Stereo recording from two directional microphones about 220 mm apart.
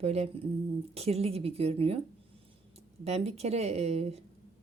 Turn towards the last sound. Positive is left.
turn(degrees=-30)  # may be behind; listen again after turning